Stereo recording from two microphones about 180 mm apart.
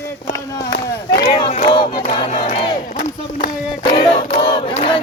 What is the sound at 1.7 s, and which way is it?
Battle cry, 30° left (ahead or behind).